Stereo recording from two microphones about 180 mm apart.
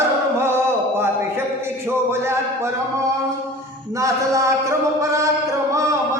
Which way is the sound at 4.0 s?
15° right (ahead or behind).